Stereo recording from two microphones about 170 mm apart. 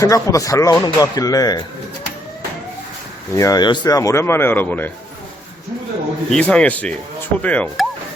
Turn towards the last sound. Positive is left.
turn(degrees=10)  # may be behind; listen again after turning